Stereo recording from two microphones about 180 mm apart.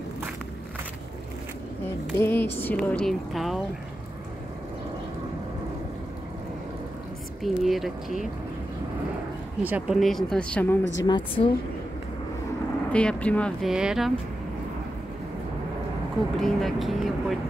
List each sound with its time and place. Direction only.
2.1 s speech: 10° left (ahead or behind)
7.4 s speech: centre (ahead or behind)
9.6 s speech: 10° right (ahead or behind); by 10.8 s 10° left (ahead or behind)
10.8 s a woman's voice: 90° left
11.1 s a woman's voice: 25° left (ahead or behind)
12.9 s speech: 5° left (ahead or behind)
16.3 s speech: centre (ahead or behind)